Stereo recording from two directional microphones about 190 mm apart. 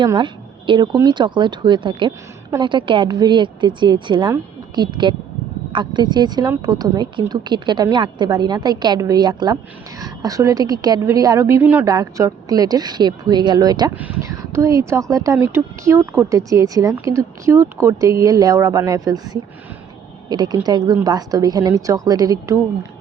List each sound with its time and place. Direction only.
0.0 s speech: 25° right (ahead or behind)